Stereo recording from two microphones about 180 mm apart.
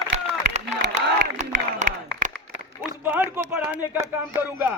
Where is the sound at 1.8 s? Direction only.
45° right (ahead or behind).